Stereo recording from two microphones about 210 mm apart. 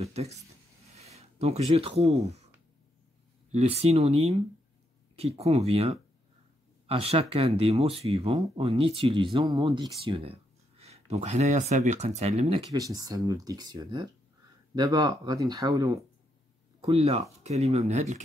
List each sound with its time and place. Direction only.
0.0 s speech: 30° right (ahead or behind)
3.5 s speech: 30° right (ahead or behind)
12.7 s speech: 15° right (ahead or behind)
16.8 s speech: 30° right (ahead or behind)